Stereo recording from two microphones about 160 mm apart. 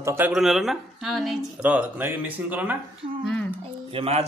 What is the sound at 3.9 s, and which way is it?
Speech, 35° right (ahead or behind).